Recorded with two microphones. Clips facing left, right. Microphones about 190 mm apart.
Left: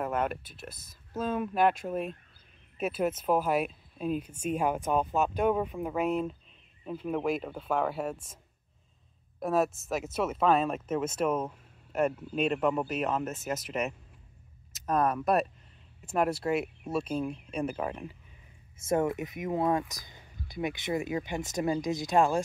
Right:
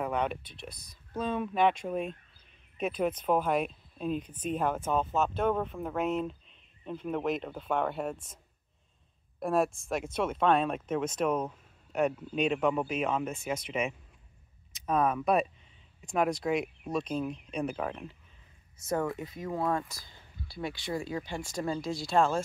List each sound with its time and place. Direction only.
0.0 s speech: 5° left (ahead or behind)
9.4 s speech: 5° left (ahead or behind)
18.9 s speech: 20° left (ahead or behind)